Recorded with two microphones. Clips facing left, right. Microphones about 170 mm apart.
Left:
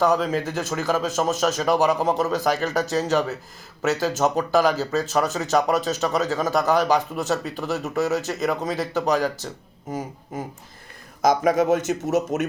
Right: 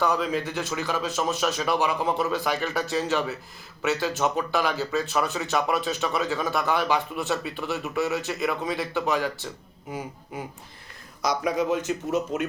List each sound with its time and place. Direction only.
0.0 s speech: 40° left (ahead or behind)
11.9 s speech: 80° left